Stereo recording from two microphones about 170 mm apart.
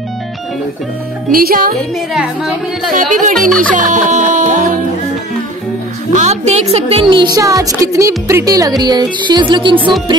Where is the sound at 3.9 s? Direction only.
45° right (ahead or behind).